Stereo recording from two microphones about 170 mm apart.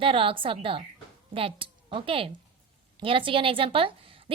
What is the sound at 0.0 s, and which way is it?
A woman's voice, 30° right (ahead or behind).